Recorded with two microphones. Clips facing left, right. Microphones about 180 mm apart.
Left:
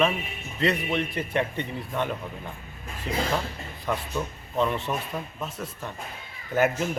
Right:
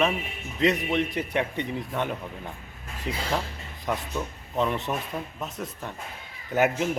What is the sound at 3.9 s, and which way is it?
Speech, 10° right (ahead or behind).